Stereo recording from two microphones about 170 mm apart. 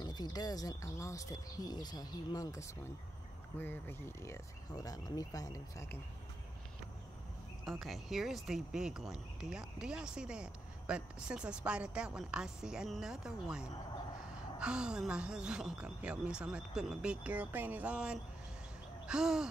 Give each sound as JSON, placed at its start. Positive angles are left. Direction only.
{"t": 0.0, "sound": "speech", "side_deg": 25}
{"t": 7.6, "sound": "speech", "side_deg": 0}